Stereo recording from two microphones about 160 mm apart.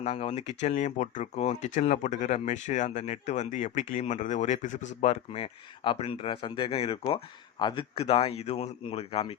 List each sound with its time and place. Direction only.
0.0 s speech: 40° left (ahead or behind)